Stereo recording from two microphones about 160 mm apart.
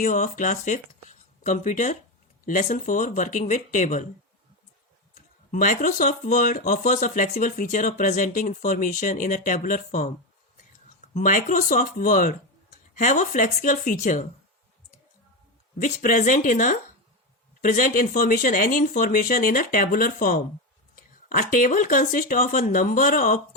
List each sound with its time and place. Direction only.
0.0 s speech: 50° left (ahead or behind)
5.1 s speech: 55° left (ahead or behind)
11.1 s speech: 55° left (ahead or behind)
15.8 s speech: 55° left (ahead or behind)